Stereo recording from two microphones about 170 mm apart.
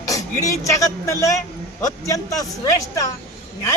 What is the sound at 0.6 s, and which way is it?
A man's voice, 20° left (ahead or behind).